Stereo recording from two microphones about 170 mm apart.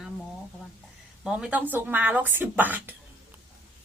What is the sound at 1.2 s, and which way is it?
A woman's voice, 5° right (ahead or behind).